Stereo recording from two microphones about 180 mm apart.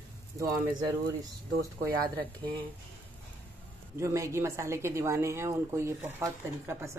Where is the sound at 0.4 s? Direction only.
20° right (ahead or behind).